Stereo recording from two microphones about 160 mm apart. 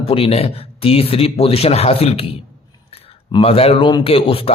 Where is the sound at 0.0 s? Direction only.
35° left (ahead or behind).